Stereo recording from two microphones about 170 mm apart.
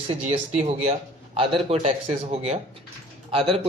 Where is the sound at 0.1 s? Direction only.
40° right (ahead or behind).